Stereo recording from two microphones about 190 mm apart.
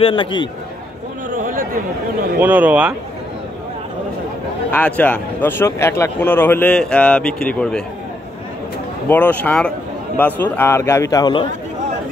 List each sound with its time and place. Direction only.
0.0 s a man's voice: 25° left (ahead or behind)
1.3 s a sound: 45° right (ahead or behind)
2.4 s speech: 10° right (ahead or behind)
4.6 s speech: 10° left (ahead or behind)
9.1 s speech: 10° left (ahead or behind)